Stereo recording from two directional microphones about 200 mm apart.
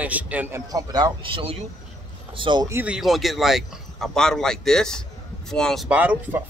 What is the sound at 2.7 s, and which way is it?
Speech, 5° right (ahead or behind).